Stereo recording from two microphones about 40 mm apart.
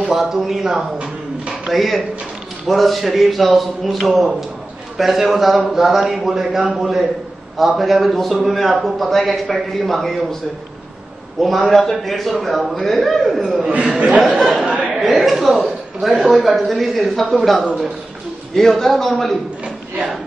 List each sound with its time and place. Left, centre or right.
0.1 s a sound: centre
1.7 s a man's voice: centre
5.7 s a sound: centre
7.5 s a man's voice: centre
11.3 s a man's voice: centre
13.4 s a sound: centre
13.9 s speech: right
14.6 s chatter: right
15.0 s a man's voice: centre